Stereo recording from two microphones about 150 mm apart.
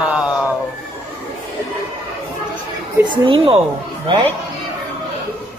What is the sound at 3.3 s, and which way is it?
Speech, 35° right (ahead or behind).